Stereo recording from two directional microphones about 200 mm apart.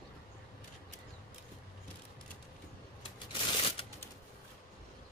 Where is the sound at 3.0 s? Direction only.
25° left (ahead or behind).